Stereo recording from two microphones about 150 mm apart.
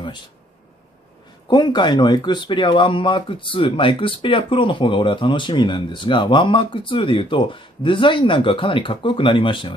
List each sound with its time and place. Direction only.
1.5 s speech: 30° left (ahead or behind)